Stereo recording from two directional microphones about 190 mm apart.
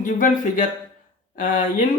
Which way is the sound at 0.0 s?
45° left (ahead or behind).